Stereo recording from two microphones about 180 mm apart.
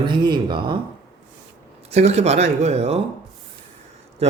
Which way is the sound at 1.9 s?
35° right (ahead or behind).